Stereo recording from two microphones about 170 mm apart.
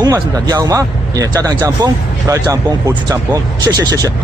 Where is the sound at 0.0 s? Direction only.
20° right (ahead or behind).